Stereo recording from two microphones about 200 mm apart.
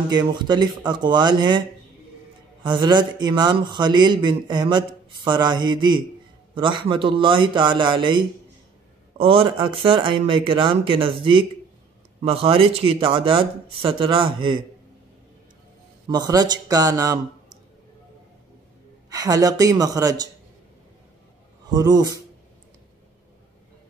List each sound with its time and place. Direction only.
0.1 s a man's voice: 20° right (ahead or behind)
2.6 s a man's voice: 20° right (ahead or behind)
16.1 s a woman's voice: 20° right (ahead or behind)
19.0 s a woman's voice: 20° right (ahead or behind)
21.6 s a man's voice: 20° right (ahead or behind)